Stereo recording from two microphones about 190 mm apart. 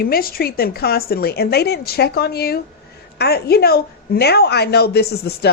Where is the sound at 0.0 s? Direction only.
50° left (ahead or behind).